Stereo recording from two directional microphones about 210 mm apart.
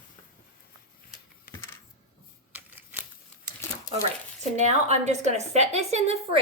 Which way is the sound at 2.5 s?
10° right (ahead or behind).